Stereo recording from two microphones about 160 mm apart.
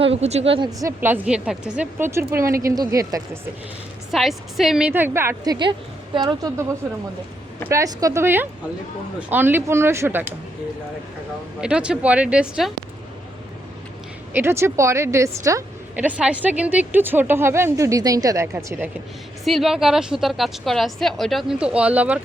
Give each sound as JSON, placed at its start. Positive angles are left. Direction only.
{"t": 0.0, "sound": "speech", "side_deg": -40}
{"t": 0.8, "sound": "speech", "side_deg": -15}
{"t": 4.1, "sound": "a woman's voice", "side_deg": 0}
{"t": 7.7, "sound": "speech", "side_deg": -20}
{"t": 11.6, "sound": "speech", "side_deg": -5}
{"t": 14.3, "sound": "speech", "side_deg": -15}
{"t": 16.0, "sound": "speech", "side_deg": -5}
{"t": 19.5, "sound": "a woman's voice", "side_deg": 0}